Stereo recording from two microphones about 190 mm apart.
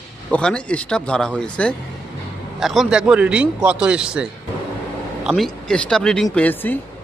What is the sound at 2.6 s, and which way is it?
Speech, centre (ahead or behind).